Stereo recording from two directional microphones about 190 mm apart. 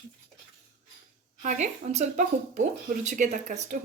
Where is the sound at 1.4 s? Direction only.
40° right (ahead or behind).